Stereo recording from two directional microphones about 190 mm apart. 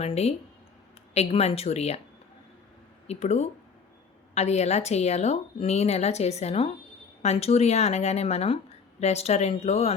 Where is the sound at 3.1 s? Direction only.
35° left (ahead or behind).